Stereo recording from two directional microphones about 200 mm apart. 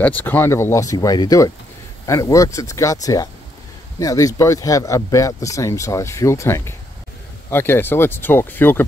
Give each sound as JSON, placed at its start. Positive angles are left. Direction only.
{"t": 0.0, "sound": "speech", "side_deg": 10}